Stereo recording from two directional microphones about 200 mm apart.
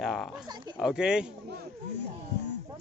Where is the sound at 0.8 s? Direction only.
5° right (ahead or behind).